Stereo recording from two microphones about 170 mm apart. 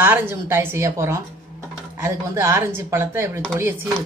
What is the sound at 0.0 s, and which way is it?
Speech, 15° right (ahead or behind).